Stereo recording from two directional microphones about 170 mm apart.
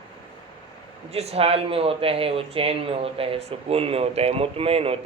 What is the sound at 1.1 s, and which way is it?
Speech, 40° right (ahead or behind).